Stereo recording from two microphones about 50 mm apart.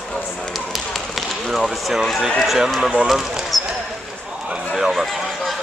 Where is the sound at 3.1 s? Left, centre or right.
Centre.